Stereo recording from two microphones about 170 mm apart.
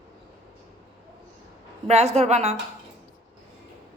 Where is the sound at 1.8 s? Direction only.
40° right (ahead or behind).